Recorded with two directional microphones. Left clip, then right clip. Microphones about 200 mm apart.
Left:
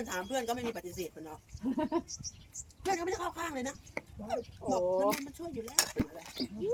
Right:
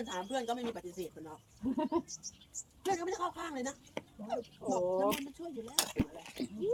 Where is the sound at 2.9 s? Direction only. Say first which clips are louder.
Left 1 dB; 35° left (ahead or behind).